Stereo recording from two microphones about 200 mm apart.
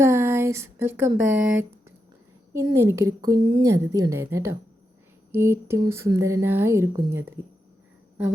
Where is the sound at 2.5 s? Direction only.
15° right (ahead or behind).